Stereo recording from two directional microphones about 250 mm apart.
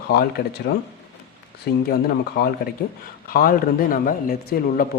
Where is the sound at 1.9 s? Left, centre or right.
Left.